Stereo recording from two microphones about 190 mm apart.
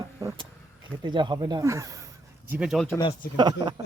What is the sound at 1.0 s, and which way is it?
Speech, 25° right (ahead or behind).